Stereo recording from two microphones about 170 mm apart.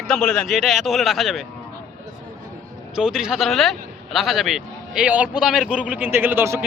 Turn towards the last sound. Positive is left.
turn(degrees=-15)  # may be behind; listen again after turning